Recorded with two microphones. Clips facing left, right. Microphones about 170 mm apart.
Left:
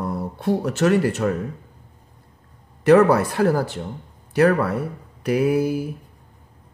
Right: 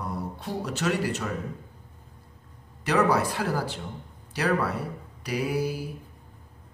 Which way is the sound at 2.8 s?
55° left (ahead or behind).